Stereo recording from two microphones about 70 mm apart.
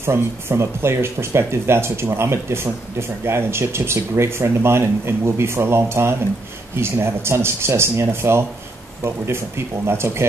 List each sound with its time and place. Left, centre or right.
0.0 s speech: right
9.8 s speech: right